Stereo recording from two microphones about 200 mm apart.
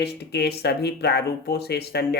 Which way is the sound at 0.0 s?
55° left (ahead or behind).